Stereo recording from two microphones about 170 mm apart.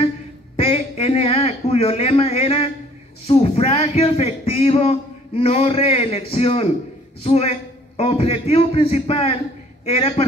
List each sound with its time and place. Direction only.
0.6 s a sound: 35° left (ahead or behind)
3.3 s a man's voice: 35° left (ahead or behind)
8.0 s a man's voice: 35° left (ahead or behind)